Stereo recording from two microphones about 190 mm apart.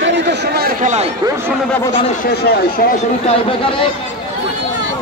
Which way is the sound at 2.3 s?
55° left (ahead or behind).